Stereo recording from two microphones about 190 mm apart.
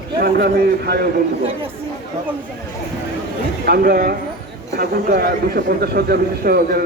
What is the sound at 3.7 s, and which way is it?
A man's voice, 50° right (ahead or behind).